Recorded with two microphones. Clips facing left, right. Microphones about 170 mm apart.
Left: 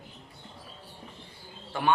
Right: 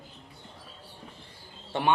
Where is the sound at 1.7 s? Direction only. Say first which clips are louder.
Right 1 dB; 25° right (ahead or behind).